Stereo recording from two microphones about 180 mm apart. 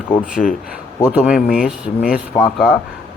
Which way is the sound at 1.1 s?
5° right (ahead or behind).